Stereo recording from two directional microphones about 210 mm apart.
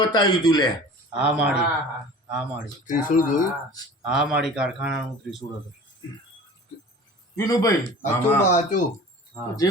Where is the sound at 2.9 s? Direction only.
40° left (ahead or behind).